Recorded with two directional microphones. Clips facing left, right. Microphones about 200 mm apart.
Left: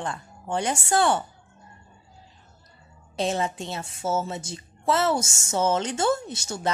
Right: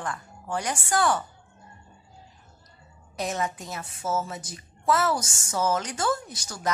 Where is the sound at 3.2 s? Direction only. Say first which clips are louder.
Left 4 dB; 30° left (ahead or behind).